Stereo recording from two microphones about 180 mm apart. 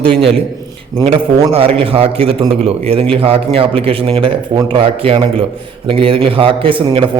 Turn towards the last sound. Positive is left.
turn(degrees=-30)  # may be behind; listen again after turning